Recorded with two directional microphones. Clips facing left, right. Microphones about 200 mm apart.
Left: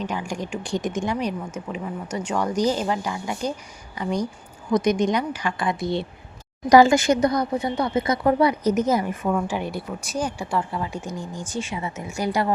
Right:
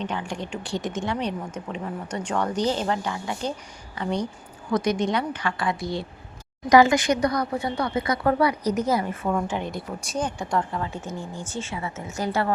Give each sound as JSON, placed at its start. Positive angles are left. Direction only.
{"t": 0.0, "sound": "a woman's voice", "side_deg": 10}
{"t": 4.7, "sound": "a woman's voice", "side_deg": 20}
{"t": 6.7, "sound": "speech", "side_deg": 30}
{"t": 9.5, "sound": "a woman's voice", "side_deg": 10}